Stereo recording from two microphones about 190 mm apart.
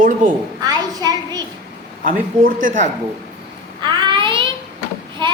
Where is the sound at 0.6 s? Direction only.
20° right (ahead or behind).